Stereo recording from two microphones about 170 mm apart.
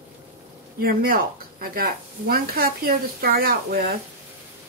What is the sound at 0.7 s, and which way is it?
Speech, 60° right (ahead or behind).